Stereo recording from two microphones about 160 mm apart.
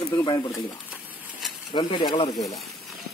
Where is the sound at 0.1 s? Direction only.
20° left (ahead or behind).